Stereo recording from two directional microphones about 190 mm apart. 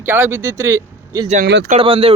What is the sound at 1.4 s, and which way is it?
Speech, 65° right (ahead or behind).